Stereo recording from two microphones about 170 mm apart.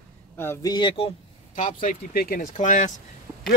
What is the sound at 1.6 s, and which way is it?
Speech, 50° left (ahead or behind).